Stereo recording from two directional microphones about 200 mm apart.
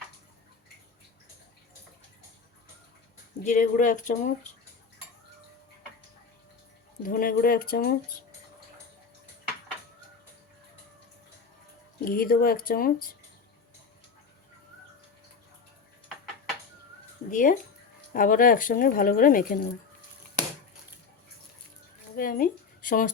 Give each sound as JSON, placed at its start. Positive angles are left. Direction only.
{"t": 3.4, "sound": "speech", "side_deg": 40}
{"t": 7.0, "sound": "speech", "side_deg": 45}
{"t": 12.0, "sound": "speech", "side_deg": 45}
{"t": 17.3, "sound": "speech", "side_deg": 40}
{"t": 22.1, "sound": "a sound", "side_deg": 45}